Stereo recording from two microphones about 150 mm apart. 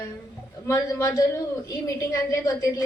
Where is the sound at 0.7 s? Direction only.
20° left (ahead or behind).